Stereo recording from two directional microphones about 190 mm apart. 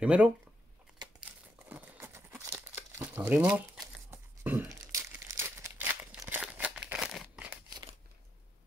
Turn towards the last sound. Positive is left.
turn(degrees=-5)  # may be behind; listen again after turning